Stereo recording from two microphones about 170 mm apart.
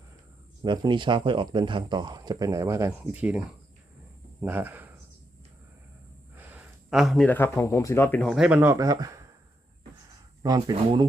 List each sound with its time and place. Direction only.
0.6 s speech: 25° right (ahead or behind)
3.0 s speech: 5° right (ahead or behind)
6.3 s a sound: 10° right (ahead or behind)
7.3 s speech: 15° left (ahead or behind)
8.4 s speech: 10° right (ahead or behind)
10.4 s speech: 25° right (ahead or behind)